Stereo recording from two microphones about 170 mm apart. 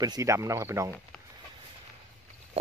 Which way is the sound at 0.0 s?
20° right (ahead or behind).